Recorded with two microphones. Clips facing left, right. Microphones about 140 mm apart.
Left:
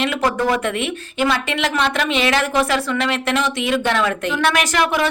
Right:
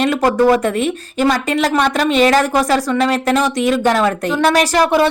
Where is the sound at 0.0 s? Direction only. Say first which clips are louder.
Right 6 dB; 40° right (ahead or behind).